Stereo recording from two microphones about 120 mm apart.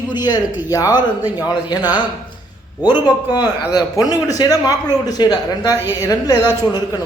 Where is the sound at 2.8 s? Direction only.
35° left (ahead or behind).